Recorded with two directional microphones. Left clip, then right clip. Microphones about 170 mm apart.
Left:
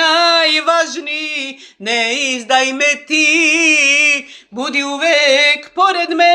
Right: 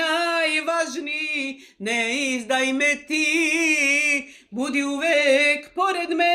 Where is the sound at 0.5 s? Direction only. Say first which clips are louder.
Left 9 dB; 15° right (ahead or behind).